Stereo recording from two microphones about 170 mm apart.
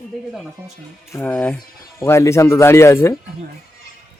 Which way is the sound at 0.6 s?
15° right (ahead or behind).